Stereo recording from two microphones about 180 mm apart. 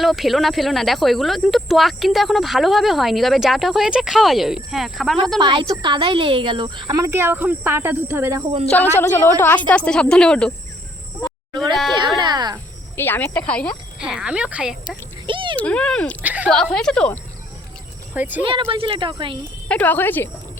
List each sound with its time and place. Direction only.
0.0 s speech: centre (ahead or behind)
5.4 s a woman's voice: 25° right (ahead or behind)
9.0 s a woman's voice: 10° left (ahead or behind)
11.7 s speech: centre (ahead or behind)
11.9 s a sound: 25° right (ahead or behind)
13.0 s a woman's voice: 10° left (ahead or behind)
14.0 s speech: 5° right (ahead or behind)
15.3 s a sound: 25° right (ahead or behind)
15.5 s a woman's voice: 5° left (ahead or behind)
16.2 s speech: 10° right (ahead or behind)
16.5 s speech: 5° left (ahead or behind)
18.1 s speech: 10° right (ahead or behind)
18.4 s a woman's voice: 30° right (ahead or behind)
19.6 s a woman's voice: 10° left (ahead or behind)